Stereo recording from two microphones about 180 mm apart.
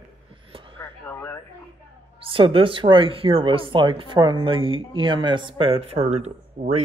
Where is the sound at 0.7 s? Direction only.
15° left (ahead or behind).